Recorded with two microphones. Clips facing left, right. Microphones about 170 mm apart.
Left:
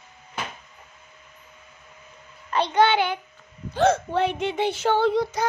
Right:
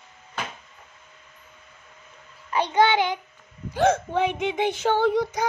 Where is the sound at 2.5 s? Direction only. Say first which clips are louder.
Even; 10° right (ahead or behind).